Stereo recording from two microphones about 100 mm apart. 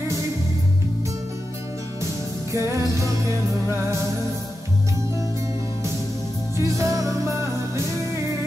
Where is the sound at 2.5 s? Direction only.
30° right (ahead or behind).